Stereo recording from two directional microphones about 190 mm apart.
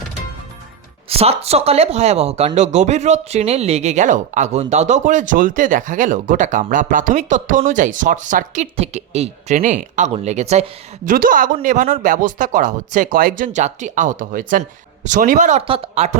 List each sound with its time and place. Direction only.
1.1 s speech: 30° right (ahead or behind)